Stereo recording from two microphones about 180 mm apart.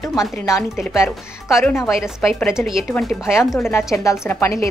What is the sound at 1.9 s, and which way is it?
Speech, 5° right (ahead or behind).